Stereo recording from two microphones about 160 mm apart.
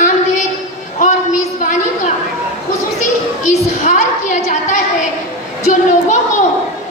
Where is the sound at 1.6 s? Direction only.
50° left (ahead or behind).